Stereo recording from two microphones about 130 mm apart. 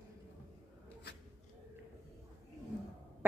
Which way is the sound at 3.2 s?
15° right (ahead or behind).